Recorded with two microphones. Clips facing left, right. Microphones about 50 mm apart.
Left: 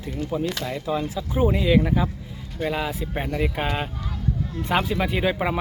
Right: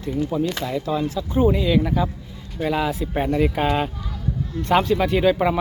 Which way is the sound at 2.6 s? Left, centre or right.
Centre.